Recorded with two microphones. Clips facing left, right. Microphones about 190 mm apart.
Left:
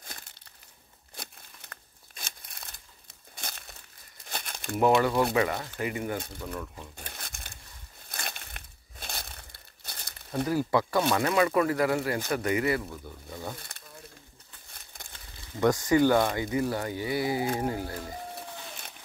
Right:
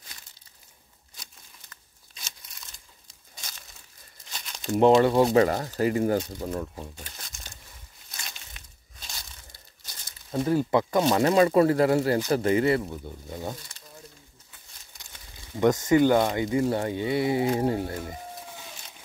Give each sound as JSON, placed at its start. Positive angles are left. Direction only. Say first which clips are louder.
{"t": 0.0, "sound": "crushing", "louder": "left 5 dB", "side_deg": 50}
{"t": 1.1, "sound": "crumpling", "louder": "left 7 dB", "side_deg": 60}
{"t": 4.7, "sound": "speech", "louder": "right 5 dB", "side_deg": -25}
{"t": 7.1, "sound": "crumpling", "louder": "left 2 dB", "side_deg": 60}
{"t": 10.4, "sound": "speech", "louder": "right 3 dB", "side_deg": -25}
{"t": 13.6, "sound": "crumpling", "louder": "left 1 dB", "side_deg": 55}
{"t": 14.9, "sound": "crumpling", "louder": "left 6 dB", "side_deg": 55}
{"t": 15.5, "sound": "speech", "louder": "right 3 dB", "side_deg": -20}